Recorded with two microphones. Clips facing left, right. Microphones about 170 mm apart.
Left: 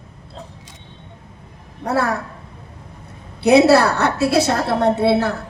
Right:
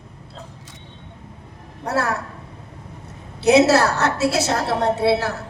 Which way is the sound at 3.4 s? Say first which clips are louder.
Left 3 dB; 60° left (ahead or behind).